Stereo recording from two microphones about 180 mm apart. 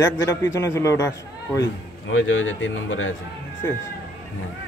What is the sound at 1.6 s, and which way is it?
A man's voice, 90° left.